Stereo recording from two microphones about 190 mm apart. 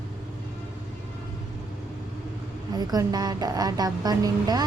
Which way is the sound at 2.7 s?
20° right (ahead or behind).